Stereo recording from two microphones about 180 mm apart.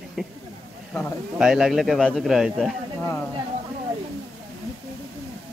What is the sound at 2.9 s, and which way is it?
Speech, 10° left (ahead or behind).